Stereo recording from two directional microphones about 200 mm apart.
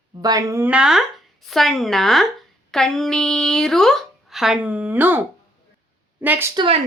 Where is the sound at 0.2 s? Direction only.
20° right (ahead or behind).